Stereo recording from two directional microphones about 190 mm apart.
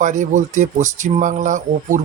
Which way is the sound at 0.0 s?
40° right (ahead or behind).